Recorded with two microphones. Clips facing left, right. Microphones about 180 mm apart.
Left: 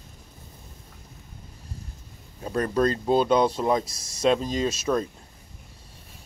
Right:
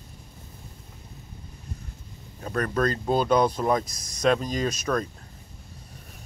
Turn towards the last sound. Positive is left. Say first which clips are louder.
# left 2 dB
turn(degrees=25)  # may be behind; listen again after turning